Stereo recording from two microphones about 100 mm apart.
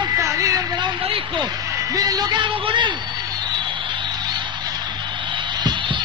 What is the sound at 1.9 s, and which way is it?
A man's voice, 40° right (ahead or behind).